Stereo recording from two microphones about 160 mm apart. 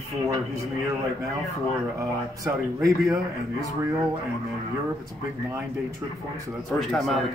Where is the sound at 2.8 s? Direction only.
Centre (ahead or behind).